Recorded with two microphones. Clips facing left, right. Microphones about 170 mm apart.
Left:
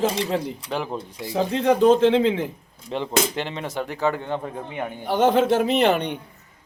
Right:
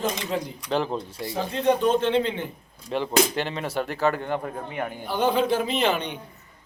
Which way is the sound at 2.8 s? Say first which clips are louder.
Right 1 dB; 20° left (ahead or behind).